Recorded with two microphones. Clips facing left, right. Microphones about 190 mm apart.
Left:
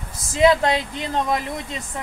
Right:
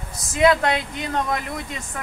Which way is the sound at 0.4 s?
25° left (ahead or behind).